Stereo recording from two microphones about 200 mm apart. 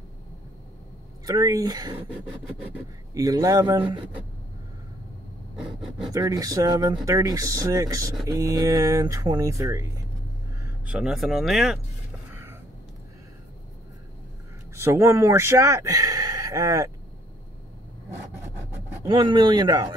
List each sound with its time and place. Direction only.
1.2 s a man's voice: 20° right (ahead or behind)
5.6 s speech: 5° right (ahead or behind)
6.1 s a man's voice: 20° right (ahead or behind)
10.9 s speech: 5° right (ahead or behind)
12.3 s a sound: 10° right (ahead or behind)
14.8 s speech: 15° right (ahead or behind)
19.0 s a man's voice: 25° right (ahead or behind)